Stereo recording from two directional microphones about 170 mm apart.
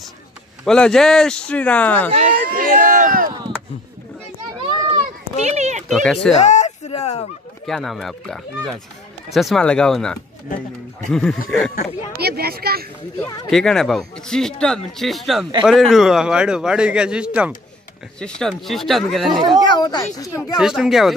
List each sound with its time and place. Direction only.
0.7 s speech: 5° left (ahead or behind)
2.1 s a sound: 50° right (ahead or behind)
3.3 s chop: 25° right (ahead or behind)
4.6 s a sound: 25° right (ahead or behind)
5.4 s a sound: 40° right (ahead or behind)
5.9 s speech: centre (ahead or behind)
6.3 s a sound: 45° left (ahead or behind)
7.6 s speech: centre (ahead or behind)
12.2 s speech: 65° right (ahead or behind)
13.5 s speech: 5° left (ahead or behind)
19.3 s speech: 20° right (ahead or behind)
19.6 s speech: 25° left (ahead or behind)
20.5 s speech: 5° right (ahead or behind)